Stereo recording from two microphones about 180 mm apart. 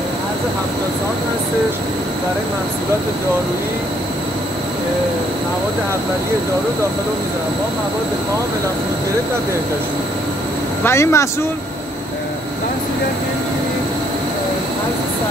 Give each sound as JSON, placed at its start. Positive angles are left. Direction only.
{"t": 10.8, "sound": "speech", "side_deg": 15}